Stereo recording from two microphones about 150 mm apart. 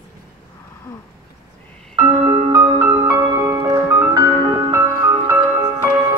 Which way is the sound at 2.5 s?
20° right (ahead or behind).